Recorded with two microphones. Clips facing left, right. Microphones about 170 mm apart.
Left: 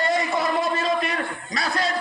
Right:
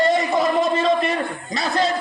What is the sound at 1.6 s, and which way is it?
Speech, 25° right (ahead or behind).